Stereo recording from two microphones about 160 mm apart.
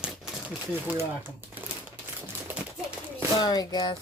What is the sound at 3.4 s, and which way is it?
Speech, 25° left (ahead or behind).